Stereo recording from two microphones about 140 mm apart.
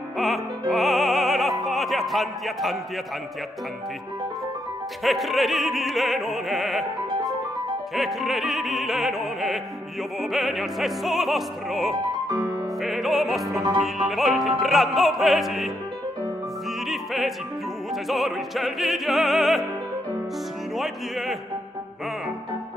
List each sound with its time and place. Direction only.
0.2 s music: centre (ahead or behind)
1.6 s speech: centre (ahead or behind)
5.0 s music: centre (ahead or behind)
7.9 s music: centre (ahead or behind)
16.9 s music: centre (ahead or behind)
20.7 s speech: centre (ahead or behind)